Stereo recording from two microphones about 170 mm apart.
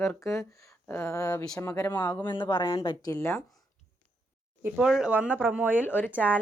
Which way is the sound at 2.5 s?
30° left (ahead or behind).